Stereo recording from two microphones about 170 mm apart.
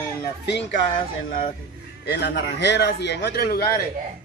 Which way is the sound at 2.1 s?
85° left.